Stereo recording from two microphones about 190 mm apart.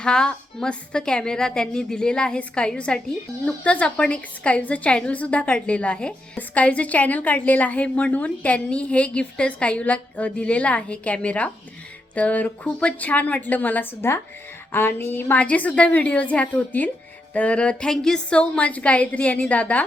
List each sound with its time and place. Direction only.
0.0 s a woman's voice: 5° left (ahead or behind)